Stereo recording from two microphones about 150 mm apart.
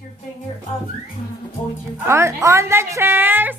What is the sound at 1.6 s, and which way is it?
Speech, 10° left (ahead or behind).